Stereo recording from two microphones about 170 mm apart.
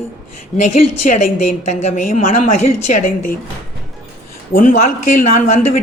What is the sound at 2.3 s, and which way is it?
Speech, 45° left (ahead or behind).